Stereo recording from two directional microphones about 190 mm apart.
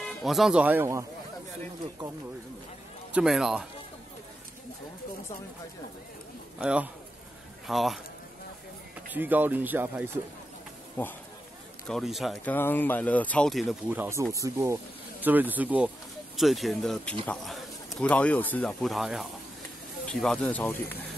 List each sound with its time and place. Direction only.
0.0 s speech: centre (ahead or behind)
3.1 s speech: 5° right (ahead or behind)
6.6 s speech: 5° right (ahead or behind)
9.1 s speech: 10° right (ahead or behind)
11.0 s speech: 10° left (ahead or behind)
11.9 s speech: centre (ahead or behind)
12.5 s speech: 10° left (ahead or behind)